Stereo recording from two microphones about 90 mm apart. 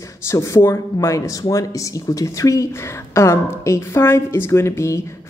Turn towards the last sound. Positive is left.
turn(degrees=30)  # may be behind; listen again after turning